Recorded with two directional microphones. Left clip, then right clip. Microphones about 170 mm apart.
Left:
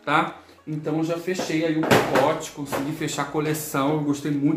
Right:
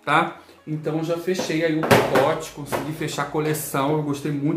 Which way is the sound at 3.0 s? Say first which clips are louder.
Right 2 dB; centre (ahead or behind).